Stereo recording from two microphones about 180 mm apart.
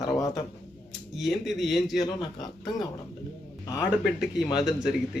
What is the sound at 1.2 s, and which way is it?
Speech, centre (ahead or behind).